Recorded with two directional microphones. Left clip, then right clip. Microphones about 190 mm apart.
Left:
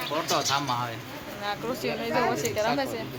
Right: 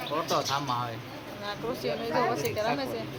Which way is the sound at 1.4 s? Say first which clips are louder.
Left 3 dB; 45° left (ahead or behind).